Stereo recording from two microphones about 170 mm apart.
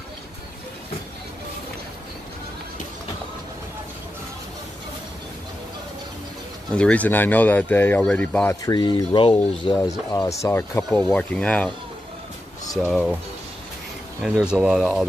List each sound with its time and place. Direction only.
6.7 s speech: 5° left (ahead or behind)
8.6 s speech: 25° left (ahead or behind)
10.1 s speech: 15° left (ahead or behind)
12.7 s speech: centre (ahead or behind)
14.2 s speech: 5° right (ahead or behind)